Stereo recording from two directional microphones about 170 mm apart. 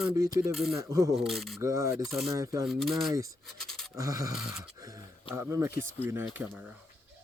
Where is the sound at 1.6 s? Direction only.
20° right (ahead or behind).